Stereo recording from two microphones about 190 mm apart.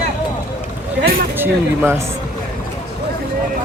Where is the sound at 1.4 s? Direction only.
10° right (ahead or behind).